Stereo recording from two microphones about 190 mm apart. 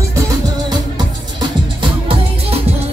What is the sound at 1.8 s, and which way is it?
Music, 30° right (ahead or behind).